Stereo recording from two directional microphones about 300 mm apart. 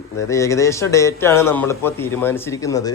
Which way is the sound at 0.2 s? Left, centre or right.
Centre.